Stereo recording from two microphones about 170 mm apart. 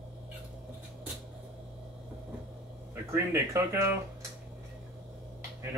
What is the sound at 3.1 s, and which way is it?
Speech, 15° right (ahead or behind).